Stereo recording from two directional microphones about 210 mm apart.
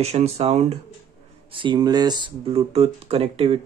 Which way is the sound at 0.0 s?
30° right (ahead or behind).